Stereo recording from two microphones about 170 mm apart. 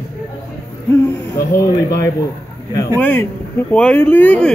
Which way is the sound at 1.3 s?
20° left (ahead or behind).